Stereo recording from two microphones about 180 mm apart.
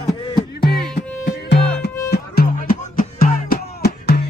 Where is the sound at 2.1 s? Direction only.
60° left (ahead or behind).